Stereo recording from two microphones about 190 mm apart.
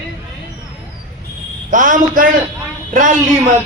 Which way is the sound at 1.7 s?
45° right (ahead or behind).